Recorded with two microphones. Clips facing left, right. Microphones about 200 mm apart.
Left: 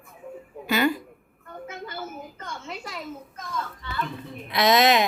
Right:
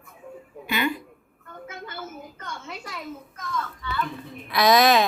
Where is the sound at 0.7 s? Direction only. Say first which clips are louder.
Left 3 dB; 40° left (ahead or behind).